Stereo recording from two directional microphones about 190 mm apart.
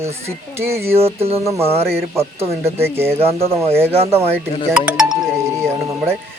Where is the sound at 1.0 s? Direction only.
30° right (ahead or behind).